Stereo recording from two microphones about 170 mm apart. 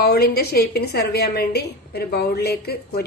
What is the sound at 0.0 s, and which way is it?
A woman's voice, 65° left (ahead or behind).